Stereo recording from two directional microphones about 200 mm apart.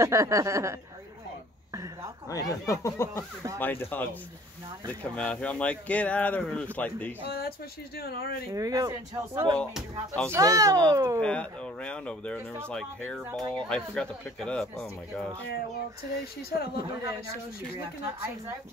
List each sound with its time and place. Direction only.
0.0 s speech: 15° right (ahead or behind)
2.2 s speech: 15° left (ahead or behind)
7.2 s speech: 50° left (ahead or behind)
8.5 s speech: 15° right (ahead or behind)
9.6 s speech: 5° left (ahead or behind)
10.3 s speech: 15° right (ahead or behind)
11.1 s speech: 5° left (ahead or behind)
15.4 s speech: 50° left (ahead or behind)
16.7 s a man's voice: 20° right (ahead or behind)